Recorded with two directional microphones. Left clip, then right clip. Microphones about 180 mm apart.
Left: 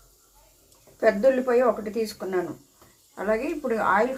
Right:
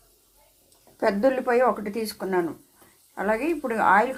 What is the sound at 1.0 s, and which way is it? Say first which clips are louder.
A woman's voice: left 2 dB; 50° right (ahead or behind).